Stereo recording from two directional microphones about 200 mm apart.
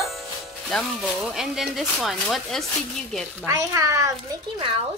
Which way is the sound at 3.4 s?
15° right (ahead or behind).